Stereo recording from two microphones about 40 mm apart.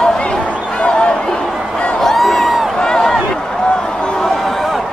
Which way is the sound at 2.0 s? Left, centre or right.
Centre.